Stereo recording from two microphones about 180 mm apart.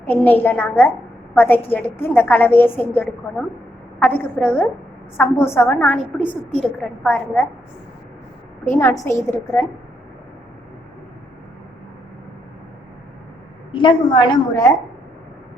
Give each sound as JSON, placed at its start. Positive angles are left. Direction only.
{"t": 0.0, "sound": "a woman's voice", "side_deg": 10}
{"t": 8.7, "sound": "a woman's voice", "side_deg": 10}
{"t": 13.7, "sound": "a woman's voice", "side_deg": 25}